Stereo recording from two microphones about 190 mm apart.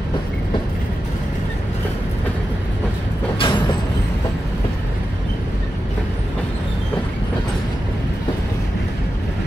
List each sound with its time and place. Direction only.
3.3 s vehicle: 25° left (ahead or behind)